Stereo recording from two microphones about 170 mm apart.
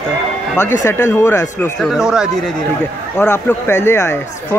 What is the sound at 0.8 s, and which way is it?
Speech, 15° left (ahead or behind).